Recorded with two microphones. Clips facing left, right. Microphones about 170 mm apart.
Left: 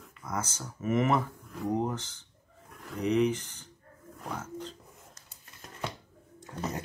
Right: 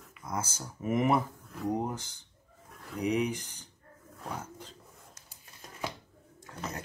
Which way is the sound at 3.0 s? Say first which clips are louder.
Left 3 dB; 10° right (ahead or behind).